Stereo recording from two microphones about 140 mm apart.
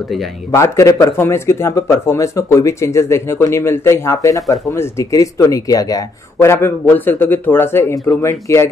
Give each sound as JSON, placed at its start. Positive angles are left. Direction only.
{"t": 0.5, "sound": "speech", "side_deg": 25}